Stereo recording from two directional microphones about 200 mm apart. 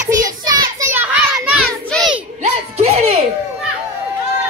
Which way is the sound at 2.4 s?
35° right (ahead or behind).